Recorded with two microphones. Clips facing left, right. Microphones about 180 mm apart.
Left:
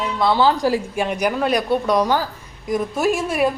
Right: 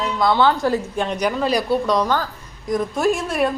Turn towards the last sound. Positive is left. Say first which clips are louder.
# left 1 dB
turn(degrees=5)  # may be behind; listen again after turning